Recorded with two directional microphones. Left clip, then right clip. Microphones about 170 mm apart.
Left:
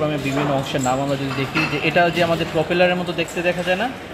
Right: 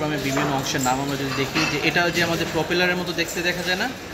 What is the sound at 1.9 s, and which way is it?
Speech, 40° left (ahead or behind).